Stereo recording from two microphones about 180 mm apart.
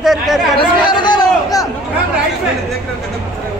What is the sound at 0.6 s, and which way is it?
Chatter, 25° left (ahead or behind).